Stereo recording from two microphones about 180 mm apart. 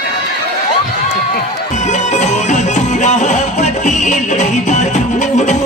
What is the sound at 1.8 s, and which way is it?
Music, 40° left (ahead or behind).